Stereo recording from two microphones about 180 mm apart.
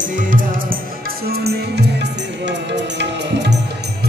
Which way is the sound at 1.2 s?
60° right (ahead or behind).